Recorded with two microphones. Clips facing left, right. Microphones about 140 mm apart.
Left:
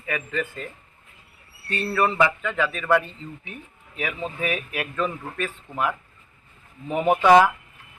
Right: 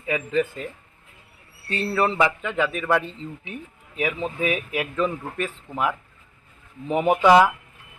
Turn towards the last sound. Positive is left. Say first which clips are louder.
# right 1 dB
turn(degrees=-15)  # may be behind; listen again after turning